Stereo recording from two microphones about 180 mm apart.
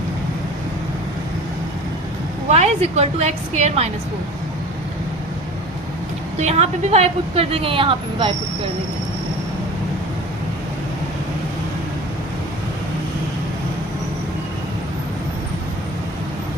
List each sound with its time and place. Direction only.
2.5 s a woman's voice: 35° right (ahead or behind)
6.3 s a woman's voice: 35° right (ahead or behind)